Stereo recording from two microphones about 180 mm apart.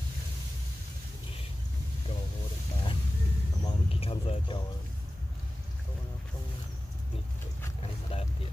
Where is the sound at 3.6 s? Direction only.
30° left (ahead or behind).